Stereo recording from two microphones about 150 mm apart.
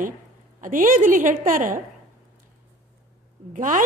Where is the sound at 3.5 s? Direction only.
55° right (ahead or behind).